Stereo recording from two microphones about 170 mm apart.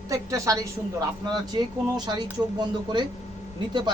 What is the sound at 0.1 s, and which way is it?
Speech, 20° right (ahead or behind).